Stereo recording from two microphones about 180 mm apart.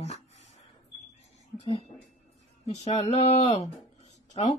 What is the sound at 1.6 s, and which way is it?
Speech, 35° left (ahead or behind).